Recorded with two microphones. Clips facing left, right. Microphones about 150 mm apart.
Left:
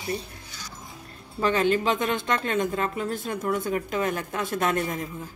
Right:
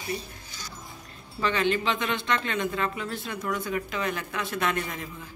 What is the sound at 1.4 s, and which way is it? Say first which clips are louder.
Speech: left 3 dB; 45° left (ahead or behind).